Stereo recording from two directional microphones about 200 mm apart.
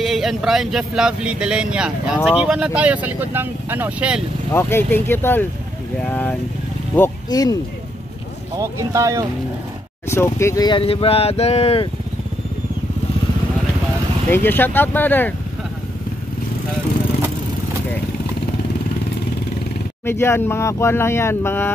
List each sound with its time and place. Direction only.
0.0 s speech: centre (ahead or behind)
4.5 s speech: 10° left (ahead or behind)
7.0 s speech: 20° left (ahead or behind)
8.5 s speech: 15° right (ahead or behind)
10.0 s speech: 15° left (ahead or behind); by 11.9 s 30° left (ahead or behind)
14.3 s speech: 10° left (ahead or behind)
20.1 s speech: 10° left (ahead or behind)